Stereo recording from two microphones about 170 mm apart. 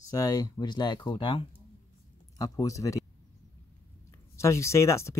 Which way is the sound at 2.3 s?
20° left (ahead or behind).